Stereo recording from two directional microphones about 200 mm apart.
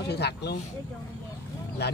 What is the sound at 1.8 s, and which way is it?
Speech, 55° left (ahead or behind).